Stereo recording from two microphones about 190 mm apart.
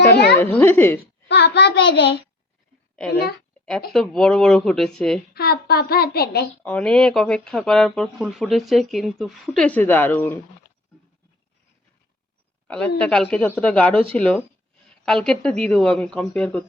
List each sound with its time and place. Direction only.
0.0 s a sound: 60° left (ahead or behind)
0.3 s speech: 10° left (ahead or behind)
1.3 s a child's voice: 65° left (ahead or behind)
3.9 s speech: centre (ahead or behind)
5.3 s a child's voice: 55° left (ahead or behind)
6.6 s speech: 5° left (ahead or behind)
12.6 s speech: 5° left (ahead or behind)